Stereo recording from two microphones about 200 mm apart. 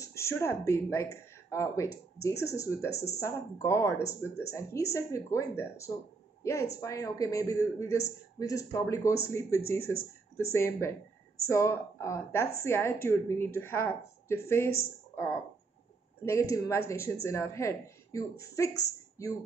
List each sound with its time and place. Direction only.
0.0 s a man's voice: 15° left (ahead or behind)
16.3 s a man's voice: 15° left (ahead or behind)